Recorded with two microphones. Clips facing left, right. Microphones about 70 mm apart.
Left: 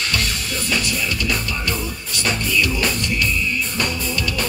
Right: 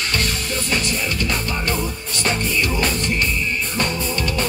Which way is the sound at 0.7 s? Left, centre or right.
Right.